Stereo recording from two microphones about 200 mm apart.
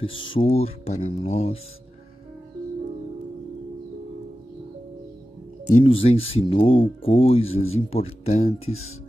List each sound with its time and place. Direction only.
0.0 s speech: 25° left (ahead or behind)
5.7 s speech: 35° left (ahead or behind)